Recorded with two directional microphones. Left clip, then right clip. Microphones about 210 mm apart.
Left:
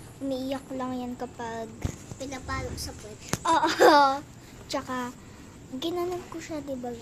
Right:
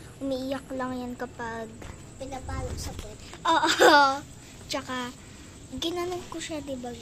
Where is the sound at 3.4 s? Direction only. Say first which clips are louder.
Even; 10° left (ahead or behind).